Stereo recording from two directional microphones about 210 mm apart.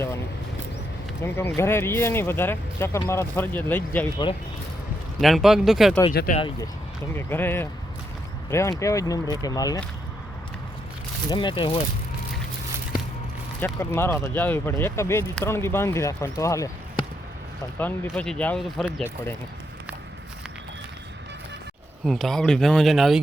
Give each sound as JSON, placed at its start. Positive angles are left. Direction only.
{"t": 1.2, "sound": "speech", "side_deg": 10}
{"t": 5.2, "sound": "speech", "side_deg": 0}
{"t": 6.3, "sound": "speech", "side_deg": 25}
{"t": 7.2, "sound": "speech", "side_deg": 10}
{"t": 11.3, "sound": "speech", "side_deg": 20}
{"t": 13.7, "sound": "speech", "side_deg": 10}
{"t": 22.0, "sound": "speech", "side_deg": 0}